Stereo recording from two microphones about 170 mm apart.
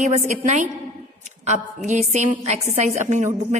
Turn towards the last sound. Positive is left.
turn(degrees=-45)  # may be behind; listen again after turning